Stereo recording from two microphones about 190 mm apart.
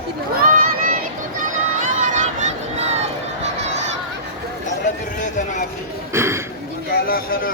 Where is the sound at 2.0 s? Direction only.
40° right (ahead or behind).